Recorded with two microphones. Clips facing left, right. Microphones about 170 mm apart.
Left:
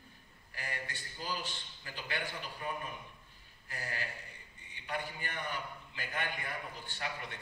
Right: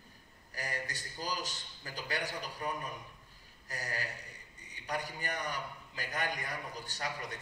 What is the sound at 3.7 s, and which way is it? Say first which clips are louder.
A man's voice: right 2 dB; 40° right (ahead or behind).